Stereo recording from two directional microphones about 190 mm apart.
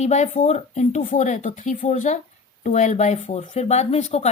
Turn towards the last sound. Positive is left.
turn(degrees=35)  # may be behind; listen again after turning